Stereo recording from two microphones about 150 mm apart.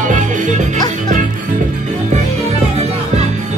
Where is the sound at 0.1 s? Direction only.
55° right (ahead or behind).